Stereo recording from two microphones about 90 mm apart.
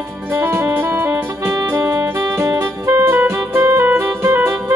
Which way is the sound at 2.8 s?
30° right (ahead or behind).